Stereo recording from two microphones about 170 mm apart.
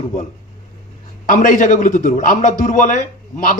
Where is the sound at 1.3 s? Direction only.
50° left (ahead or behind).